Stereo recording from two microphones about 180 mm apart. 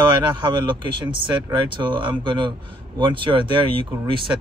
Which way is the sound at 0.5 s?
25° right (ahead or behind).